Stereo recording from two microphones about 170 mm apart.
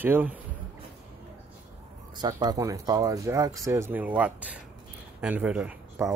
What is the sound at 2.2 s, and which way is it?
Speech, 25° right (ahead or behind).